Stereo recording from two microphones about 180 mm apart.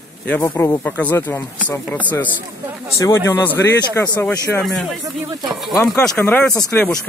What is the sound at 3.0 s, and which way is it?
Speech, 15° left (ahead or behind).